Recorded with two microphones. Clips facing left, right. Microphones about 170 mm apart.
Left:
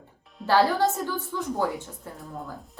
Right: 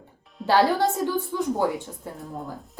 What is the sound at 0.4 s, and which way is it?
A woman's voice, 15° right (ahead or behind).